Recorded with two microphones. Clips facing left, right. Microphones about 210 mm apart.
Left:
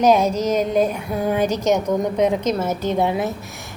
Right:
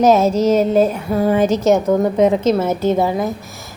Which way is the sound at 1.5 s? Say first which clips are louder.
Right 5 dB; 5° right (ahead or behind).